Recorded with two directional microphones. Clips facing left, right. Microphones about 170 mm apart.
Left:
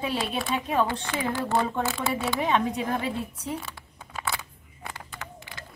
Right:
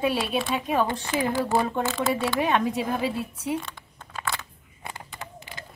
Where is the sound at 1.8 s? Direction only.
5° left (ahead or behind).